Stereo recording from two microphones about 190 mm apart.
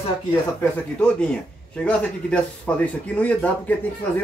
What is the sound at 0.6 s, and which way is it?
A man's voice, 5° left (ahead or behind).